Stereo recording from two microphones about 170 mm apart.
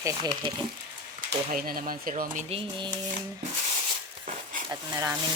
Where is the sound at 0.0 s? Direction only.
20° right (ahead or behind).